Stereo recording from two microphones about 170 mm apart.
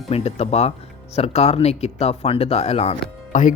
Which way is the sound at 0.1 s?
40° left (ahead or behind).